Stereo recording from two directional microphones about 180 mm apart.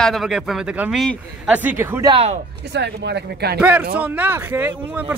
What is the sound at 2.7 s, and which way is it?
Speech, 70° right (ahead or behind).